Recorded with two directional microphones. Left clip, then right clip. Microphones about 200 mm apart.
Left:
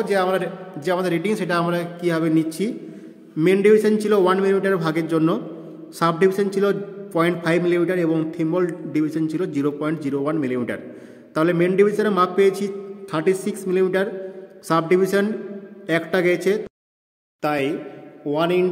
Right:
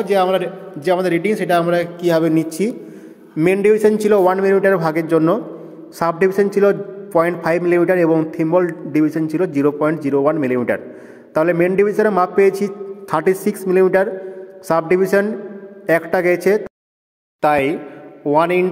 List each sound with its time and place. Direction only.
0.0 s a man's voice: 15° right (ahead or behind)
4.2 s a man's voice: 5° left (ahead or behind)
18.2 s a man's voice: 20° right (ahead or behind)